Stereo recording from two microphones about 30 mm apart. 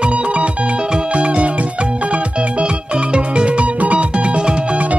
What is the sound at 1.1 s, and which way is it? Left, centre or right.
Music, right.